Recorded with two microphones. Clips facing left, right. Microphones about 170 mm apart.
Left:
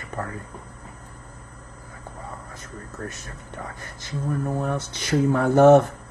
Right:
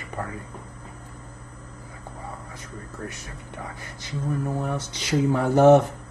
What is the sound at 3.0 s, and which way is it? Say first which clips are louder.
Speech: left 2 dB; 15° right (ahead or behind).